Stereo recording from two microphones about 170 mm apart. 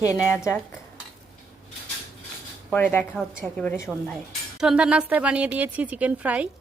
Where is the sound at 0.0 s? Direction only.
15° left (ahead or behind).